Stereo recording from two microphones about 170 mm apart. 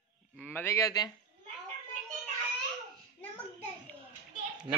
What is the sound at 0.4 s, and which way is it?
Speech, 10° left (ahead or behind).